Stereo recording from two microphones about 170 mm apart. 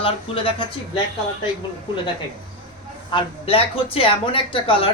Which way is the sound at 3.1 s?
30° left (ahead or behind).